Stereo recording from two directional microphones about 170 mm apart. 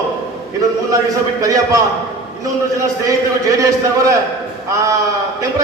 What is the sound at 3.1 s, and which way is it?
A man's voice, 20° right (ahead or behind).